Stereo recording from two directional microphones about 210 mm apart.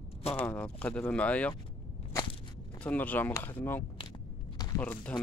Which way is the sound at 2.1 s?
20° left (ahead or behind).